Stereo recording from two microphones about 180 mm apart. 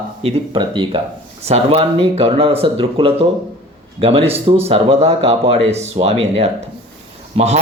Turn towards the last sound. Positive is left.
turn(degrees=-35)  # may be behind; listen again after turning